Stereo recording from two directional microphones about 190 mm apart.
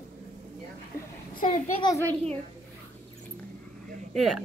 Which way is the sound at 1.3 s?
40° left (ahead or behind).